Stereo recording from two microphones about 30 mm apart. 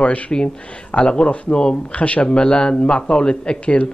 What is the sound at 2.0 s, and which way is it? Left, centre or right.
Speech, left.